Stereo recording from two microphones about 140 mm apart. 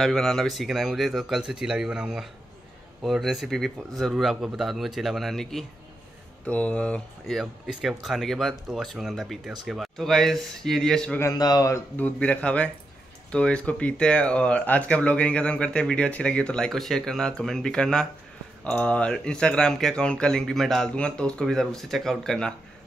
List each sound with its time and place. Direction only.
0.0 s speech: 5° left (ahead or behind)
11.1 s speech: 25° left (ahead or behind)
12.0 s speech: 10° left (ahead or behind)